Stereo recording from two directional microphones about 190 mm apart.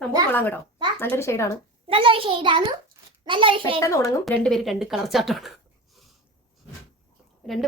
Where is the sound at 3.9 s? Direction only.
15° left (ahead or behind).